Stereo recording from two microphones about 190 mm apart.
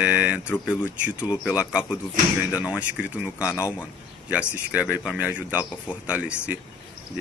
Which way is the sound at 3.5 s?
15° left (ahead or behind).